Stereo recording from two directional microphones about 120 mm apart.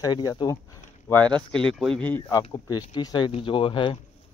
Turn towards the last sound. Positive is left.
turn(degrees=45)  # may be behind; listen again after turning